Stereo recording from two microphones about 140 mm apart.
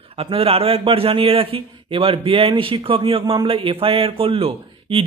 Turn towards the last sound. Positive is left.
turn(degrees=-40)  # may be behind; listen again after turning